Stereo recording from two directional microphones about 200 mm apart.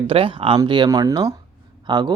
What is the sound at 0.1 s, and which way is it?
Speech, 25° right (ahead or behind).